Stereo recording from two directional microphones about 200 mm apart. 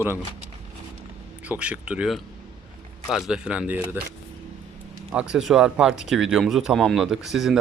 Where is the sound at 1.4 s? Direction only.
5° right (ahead or behind).